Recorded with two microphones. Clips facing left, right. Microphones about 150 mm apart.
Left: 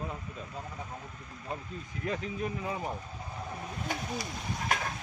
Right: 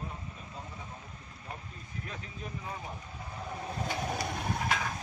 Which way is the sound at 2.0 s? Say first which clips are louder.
Left 12 dB; 80° left.